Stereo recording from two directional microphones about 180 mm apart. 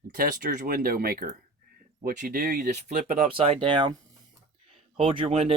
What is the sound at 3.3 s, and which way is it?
Speech, 30° right (ahead or behind).